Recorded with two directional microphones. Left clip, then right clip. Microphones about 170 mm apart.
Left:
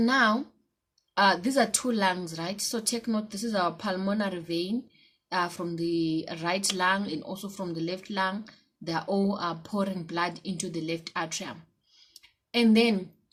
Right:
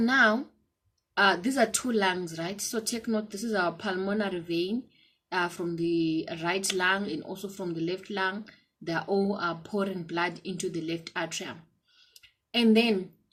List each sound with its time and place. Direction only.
0.0 s a woman's voice: 50° left (ahead or behind)